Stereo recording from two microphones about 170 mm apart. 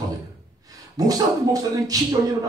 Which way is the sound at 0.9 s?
20° right (ahead or behind).